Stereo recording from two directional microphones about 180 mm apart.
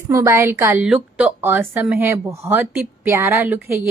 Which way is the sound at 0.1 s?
15° right (ahead or behind).